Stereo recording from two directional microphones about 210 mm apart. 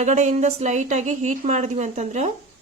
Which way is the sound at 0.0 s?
35° right (ahead or behind).